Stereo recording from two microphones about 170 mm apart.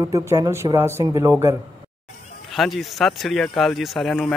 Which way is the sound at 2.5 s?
Centre (ahead or behind).